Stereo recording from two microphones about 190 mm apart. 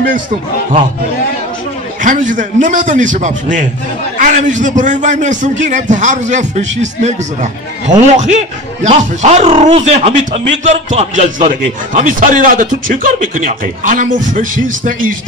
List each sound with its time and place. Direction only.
2.0 s a man's voice: 45° right (ahead or behind)
8.2 s a man's voice: 35° right (ahead or behind)